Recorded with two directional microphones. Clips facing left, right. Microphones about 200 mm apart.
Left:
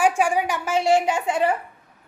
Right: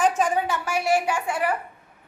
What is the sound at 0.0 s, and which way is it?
A woman's voice, 10° left (ahead or behind).